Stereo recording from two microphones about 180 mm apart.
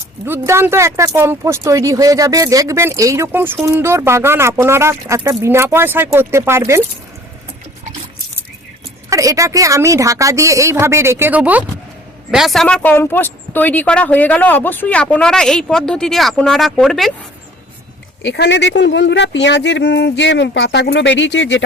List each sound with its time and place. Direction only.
0.3 s speech: 15° right (ahead or behind)
9.0 s speech: 15° right (ahead or behind); by 17.1 s centre (ahead or behind)
18.2 s speech: 75° left (ahead or behind)